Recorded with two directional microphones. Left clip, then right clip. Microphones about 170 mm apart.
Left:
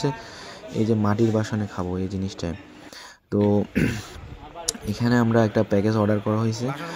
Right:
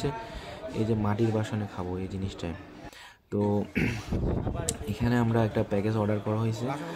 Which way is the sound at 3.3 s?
25° left (ahead or behind).